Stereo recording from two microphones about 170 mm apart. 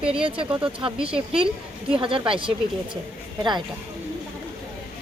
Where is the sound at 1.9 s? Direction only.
30° right (ahead or behind).